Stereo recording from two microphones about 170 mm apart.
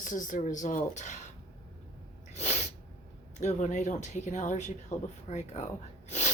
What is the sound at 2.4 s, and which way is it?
Sneeze, 40° left (ahead or behind).